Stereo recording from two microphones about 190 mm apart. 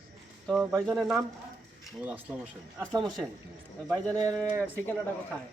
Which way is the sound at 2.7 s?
20° right (ahead or behind).